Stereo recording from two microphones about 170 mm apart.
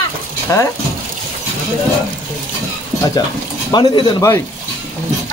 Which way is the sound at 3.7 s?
25° left (ahead or behind).